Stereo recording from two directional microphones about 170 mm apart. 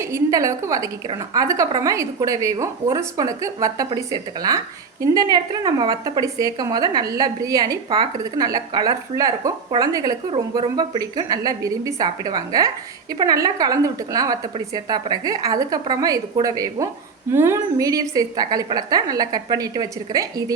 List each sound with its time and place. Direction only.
0.0 s a woman's voice: 20° right (ahead or behind)